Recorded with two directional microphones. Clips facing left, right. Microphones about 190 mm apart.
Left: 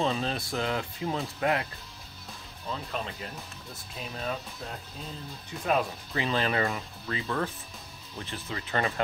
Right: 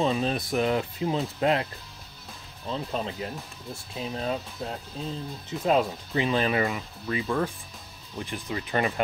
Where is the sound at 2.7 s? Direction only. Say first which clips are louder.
Right 4 dB; 30° right (ahead or behind).